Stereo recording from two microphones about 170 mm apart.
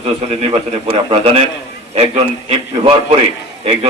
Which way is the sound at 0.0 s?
35° right (ahead or behind).